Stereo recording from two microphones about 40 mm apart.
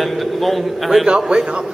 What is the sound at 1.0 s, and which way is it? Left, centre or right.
Speech, right.